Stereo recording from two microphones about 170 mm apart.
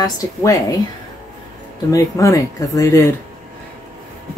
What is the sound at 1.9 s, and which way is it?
A woman's voice, 20° left (ahead or behind).